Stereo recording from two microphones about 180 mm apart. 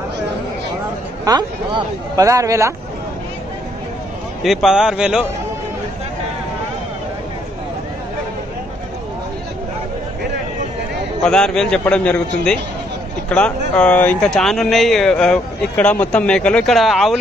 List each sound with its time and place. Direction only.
1.2 s a man's voice: 25° right (ahead or behind)
4.4 s speech: centre (ahead or behind)
11.2 s speech: 5° left (ahead or behind)